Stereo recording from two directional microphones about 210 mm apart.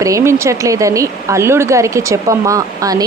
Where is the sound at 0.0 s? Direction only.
15° right (ahead or behind).